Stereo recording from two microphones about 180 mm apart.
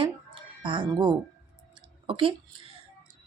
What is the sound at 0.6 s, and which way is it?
Speech, 25° right (ahead or behind).